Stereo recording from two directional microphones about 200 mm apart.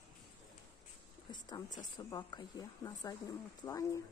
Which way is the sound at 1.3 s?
20° left (ahead or behind).